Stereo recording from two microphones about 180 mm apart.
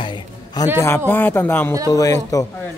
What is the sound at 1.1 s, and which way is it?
Speech, 10° left (ahead or behind).